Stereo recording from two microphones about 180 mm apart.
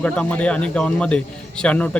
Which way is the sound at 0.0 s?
5° left (ahead or behind).